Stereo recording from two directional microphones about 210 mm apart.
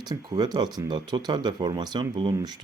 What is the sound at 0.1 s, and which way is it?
Speech, 20° right (ahead or behind).